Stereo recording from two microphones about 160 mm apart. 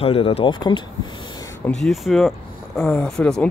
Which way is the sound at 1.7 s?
Centre (ahead or behind).